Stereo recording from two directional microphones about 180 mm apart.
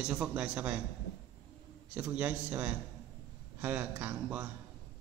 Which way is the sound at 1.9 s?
5° right (ahead or behind).